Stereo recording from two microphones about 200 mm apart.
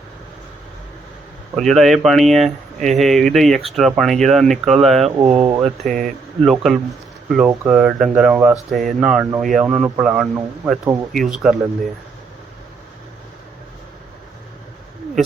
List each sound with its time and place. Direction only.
1.5 s speech: centre (ahead or behind)
5.0 s speech: 30° right (ahead or behind)
5.6 s speech: centre (ahead or behind)